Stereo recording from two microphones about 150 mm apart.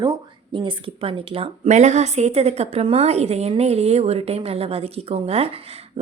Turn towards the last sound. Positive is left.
turn(degrees=-40)  # may be behind; listen again after turning